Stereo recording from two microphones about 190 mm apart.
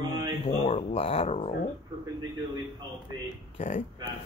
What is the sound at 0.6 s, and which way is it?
Speech, 30° left (ahead or behind).